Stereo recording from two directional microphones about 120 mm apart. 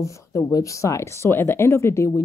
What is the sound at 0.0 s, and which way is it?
A woman's voice, 25° left (ahead or behind).